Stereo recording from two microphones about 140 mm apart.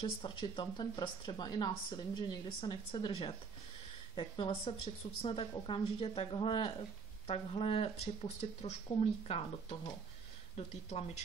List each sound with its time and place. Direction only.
0.0 s speech: 35° left (ahead or behind)